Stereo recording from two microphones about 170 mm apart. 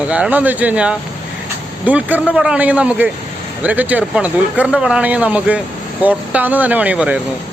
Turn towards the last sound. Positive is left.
turn(degrees=-5)  # may be behind; listen again after turning